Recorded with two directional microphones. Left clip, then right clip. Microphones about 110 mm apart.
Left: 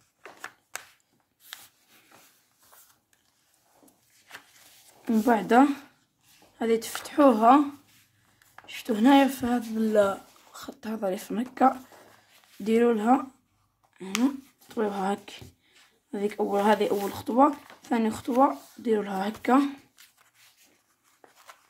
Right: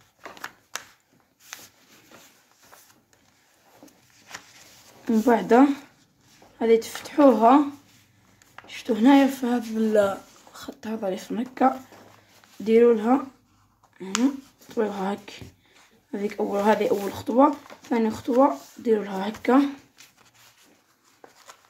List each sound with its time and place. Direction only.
5.0 s speech: 25° left (ahead or behind)
8.6 s speech: 40° left (ahead or behind)
19.4 s speech: 30° left (ahead or behind)
21.2 s a sound: 20° left (ahead or behind)